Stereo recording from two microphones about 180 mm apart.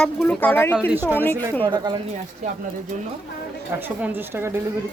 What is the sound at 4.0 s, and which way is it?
Speech, 10° right (ahead or behind).